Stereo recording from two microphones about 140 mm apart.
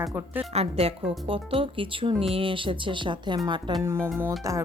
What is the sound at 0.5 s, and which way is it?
Speech, 45° right (ahead or behind).